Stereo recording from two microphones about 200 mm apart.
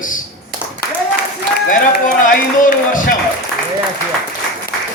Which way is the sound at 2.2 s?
40° left (ahead or behind).